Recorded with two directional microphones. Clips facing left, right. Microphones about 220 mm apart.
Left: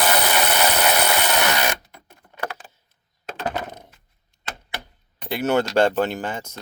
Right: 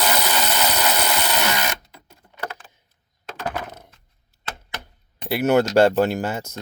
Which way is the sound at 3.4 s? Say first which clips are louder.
Left 1 dB; 15° left (ahead or behind).